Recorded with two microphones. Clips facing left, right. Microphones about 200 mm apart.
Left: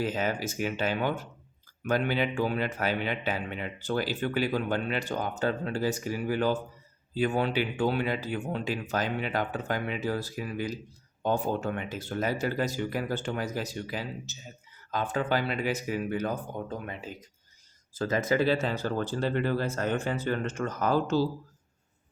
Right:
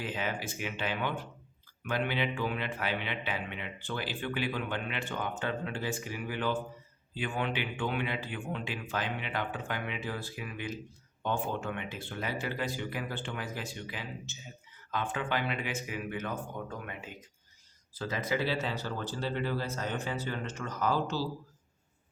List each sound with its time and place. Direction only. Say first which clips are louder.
0.0 s a man's voice: left 6 dB; 40° left (ahead or behind)